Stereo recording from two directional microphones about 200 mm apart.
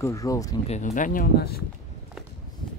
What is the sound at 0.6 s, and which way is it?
Speech, 40° left (ahead or behind).